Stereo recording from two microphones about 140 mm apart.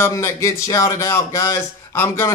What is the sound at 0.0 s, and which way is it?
Speech, 20° left (ahead or behind).